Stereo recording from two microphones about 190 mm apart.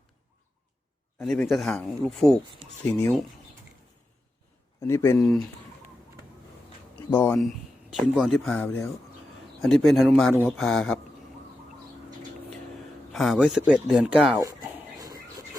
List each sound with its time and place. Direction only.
1.2 s speech: centre (ahead or behind)
4.8 s speech: 15° left (ahead or behind)
7.1 s speech: 10° left (ahead or behind)
7.4 s speech: centre (ahead or behind)
13.1 s speech: centre (ahead or behind)
15.0 s a sound: 20° right (ahead or behind)